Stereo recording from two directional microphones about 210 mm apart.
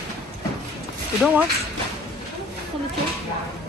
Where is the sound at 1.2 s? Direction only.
10° right (ahead or behind).